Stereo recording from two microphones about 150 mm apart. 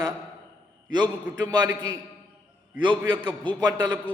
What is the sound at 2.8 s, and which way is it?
A man's voice, 30° right (ahead or behind).